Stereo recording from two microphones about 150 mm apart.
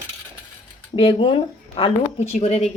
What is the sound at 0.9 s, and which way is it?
Speech, 35° left (ahead or behind).